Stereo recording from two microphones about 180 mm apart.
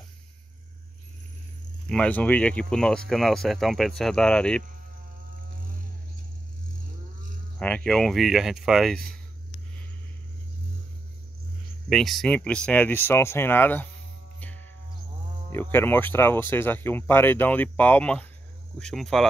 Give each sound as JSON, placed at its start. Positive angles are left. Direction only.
{"t": 1.9, "sound": "speech", "side_deg": 5}
{"t": 7.5, "sound": "speech", "side_deg": 5}
{"t": 11.9, "sound": "speech", "side_deg": 0}
{"t": 14.4, "sound": "music", "side_deg": 10}
{"t": 15.5, "sound": "speech", "side_deg": 10}